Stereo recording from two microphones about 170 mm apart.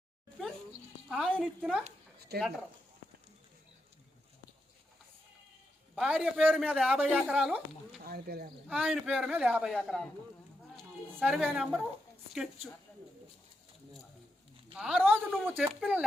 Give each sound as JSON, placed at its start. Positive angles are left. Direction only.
{"t": 1.1, "sound": "speech", "side_deg": 0}
{"t": 2.3, "sound": "speech", "side_deg": -70}
{"t": 5.9, "sound": "speech", "side_deg": -5}
{"t": 8.0, "sound": "speech", "side_deg": -65}
{"t": 8.7, "sound": "speech", "side_deg": -5}
{"t": 11.2, "sound": "speech", "side_deg": -5}
{"t": 14.8, "sound": "speech", "side_deg": -5}